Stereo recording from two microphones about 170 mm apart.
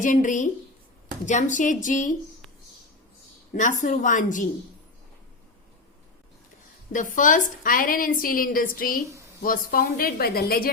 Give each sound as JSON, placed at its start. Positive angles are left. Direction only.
{"t": 0.0, "sound": "a woman's voice", "side_deg": 50}
{"t": 3.5, "sound": "a woman's voice", "side_deg": 50}
{"t": 6.9, "sound": "a woman's voice", "side_deg": 50}